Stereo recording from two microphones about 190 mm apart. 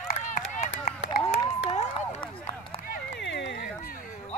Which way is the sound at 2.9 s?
65° left (ahead or behind).